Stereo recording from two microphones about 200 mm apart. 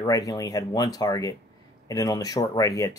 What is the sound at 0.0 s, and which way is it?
Speech, 15° left (ahead or behind).